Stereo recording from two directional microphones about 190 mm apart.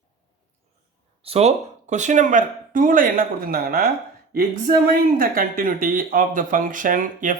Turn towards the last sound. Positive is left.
turn(degrees=-45)  # may be behind; listen again after turning